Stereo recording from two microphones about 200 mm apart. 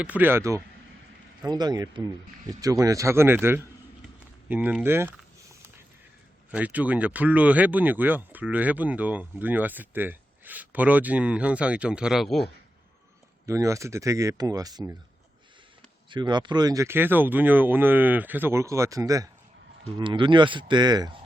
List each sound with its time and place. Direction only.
0.0 s speech: 10° right (ahead or behind)
6.5 s speech: 5° right (ahead or behind)
13.4 s speech: 15° right (ahead or behind)
16.0 s speech: 25° right (ahead or behind)